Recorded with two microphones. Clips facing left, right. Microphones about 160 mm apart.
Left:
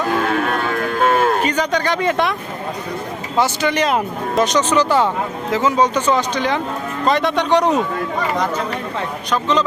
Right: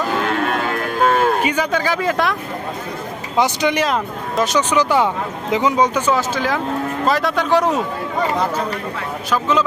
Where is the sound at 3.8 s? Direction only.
Centre (ahead or behind).